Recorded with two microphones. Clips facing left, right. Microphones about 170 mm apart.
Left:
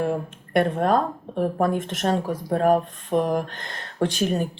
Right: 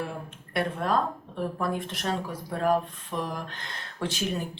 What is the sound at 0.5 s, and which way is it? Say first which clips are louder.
Speech: left 7 dB; 50° left (ahead or behind).